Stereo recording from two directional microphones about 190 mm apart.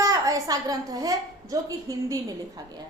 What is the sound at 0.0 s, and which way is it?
A woman's voice, 20° right (ahead or behind).